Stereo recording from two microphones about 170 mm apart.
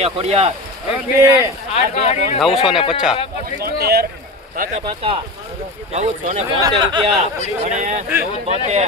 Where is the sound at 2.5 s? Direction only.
5° right (ahead or behind).